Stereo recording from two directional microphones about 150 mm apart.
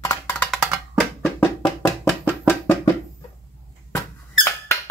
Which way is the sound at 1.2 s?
10° left (ahead or behind).